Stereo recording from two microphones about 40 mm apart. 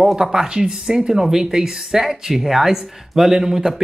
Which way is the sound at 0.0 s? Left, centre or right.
Centre.